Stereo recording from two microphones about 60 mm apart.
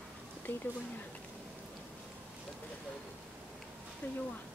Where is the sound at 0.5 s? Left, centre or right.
Left.